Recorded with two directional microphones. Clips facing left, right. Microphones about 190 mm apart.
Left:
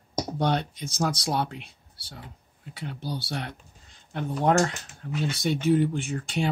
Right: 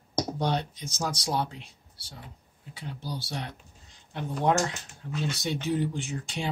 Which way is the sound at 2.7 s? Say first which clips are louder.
Left 3 dB; 60° left (ahead or behind).